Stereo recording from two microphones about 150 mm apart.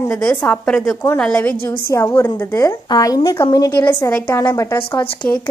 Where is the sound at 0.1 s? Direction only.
5° left (ahead or behind); by 3.8 s 25° left (ahead or behind).